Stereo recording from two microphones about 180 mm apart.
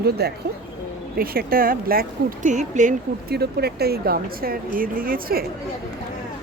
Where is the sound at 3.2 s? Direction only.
60° right (ahead or behind).